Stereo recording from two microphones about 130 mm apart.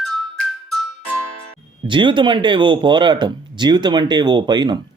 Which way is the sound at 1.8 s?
40° right (ahead or behind).